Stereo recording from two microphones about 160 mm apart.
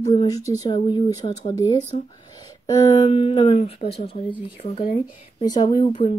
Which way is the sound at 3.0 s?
40° left (ahead or behind).